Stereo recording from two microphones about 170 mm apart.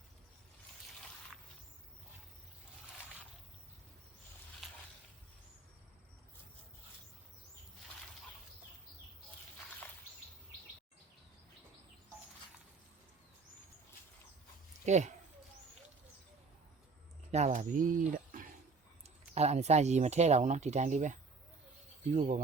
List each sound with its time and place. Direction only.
14.8 s speech: 45° right (ahead or behind)
17.3 s speech: 40° right (ahead or behind)
19.3 s speech: 40° right (ahead or behind)